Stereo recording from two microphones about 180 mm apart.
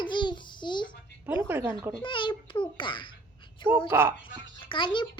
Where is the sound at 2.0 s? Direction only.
25° left (ahead or behind).